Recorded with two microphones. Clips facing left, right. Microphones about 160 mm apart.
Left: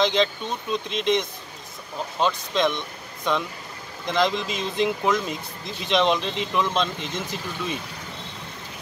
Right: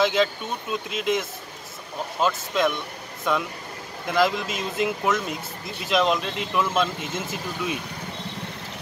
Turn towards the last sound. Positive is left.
turn(degrees=-5)  # may be behind; listen again after turning